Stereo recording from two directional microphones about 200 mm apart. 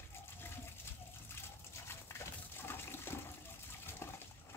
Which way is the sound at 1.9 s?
10° left (ahead or behind).